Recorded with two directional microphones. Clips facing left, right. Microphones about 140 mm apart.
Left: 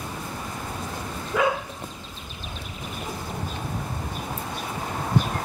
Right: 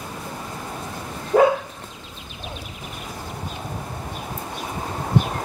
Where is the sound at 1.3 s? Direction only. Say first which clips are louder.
Right 8 dB; 40° right (ahead or behind).